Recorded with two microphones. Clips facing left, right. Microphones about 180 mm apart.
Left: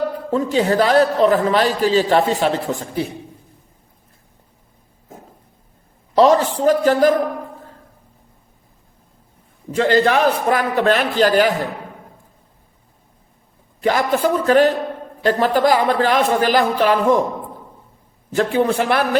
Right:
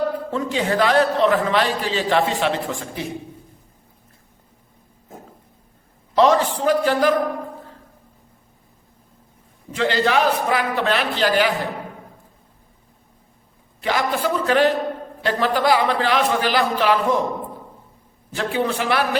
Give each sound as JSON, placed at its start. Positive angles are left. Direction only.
{"t": 0.3, "sound": "a man's voice", "side_deg": 40}
{"t": 6.1, "sound": "a man's voice", "side_deg": 40}
{"t": 9.7, "sound": "speech", "side_deg": 45}
{"t": 13.8, "sound": "speech", "side_deg": 45}
{"t": 18.3, "sound": "speech", "side_deg": 50}